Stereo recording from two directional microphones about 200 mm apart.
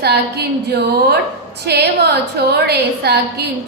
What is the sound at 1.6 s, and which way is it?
A woman's voice, 55° right (ahead or behind).